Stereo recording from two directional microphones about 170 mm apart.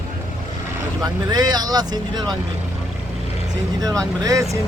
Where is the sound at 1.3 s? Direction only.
25° right (ahead or behind).